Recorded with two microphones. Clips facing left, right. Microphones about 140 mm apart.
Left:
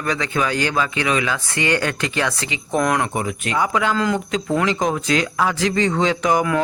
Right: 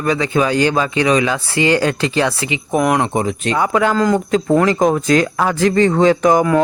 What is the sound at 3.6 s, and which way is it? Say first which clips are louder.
Speech: right 4 dB; 50° right (ahead or behind).